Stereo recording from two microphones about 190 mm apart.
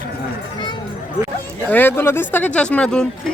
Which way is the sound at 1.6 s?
10° left (ahead or behind).